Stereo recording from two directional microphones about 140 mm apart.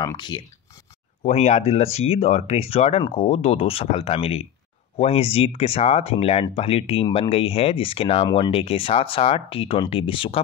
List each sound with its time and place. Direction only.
0.0 s speech: 30° left (ahead or behind)
1.2 s speech: 50° left (ahead or behind)